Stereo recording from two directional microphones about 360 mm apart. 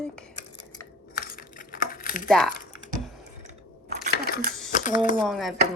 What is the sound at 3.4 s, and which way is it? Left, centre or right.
Chewing, right.